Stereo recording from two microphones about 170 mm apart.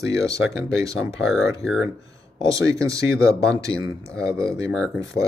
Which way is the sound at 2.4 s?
20° right (ahead or behind).